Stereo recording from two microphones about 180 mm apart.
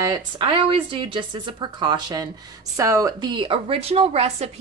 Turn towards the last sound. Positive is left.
turn(degrees=-35)  # may be behind; listen again after turning